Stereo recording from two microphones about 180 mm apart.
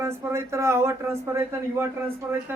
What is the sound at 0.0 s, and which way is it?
Speech, 15° right (ahead or behind).